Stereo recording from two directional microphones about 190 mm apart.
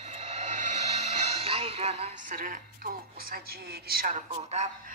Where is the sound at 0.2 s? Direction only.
35° right (ahead or behind).